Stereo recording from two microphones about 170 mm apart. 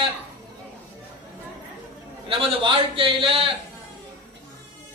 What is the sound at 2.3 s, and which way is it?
A man's voice, 30° right (ahead or behind).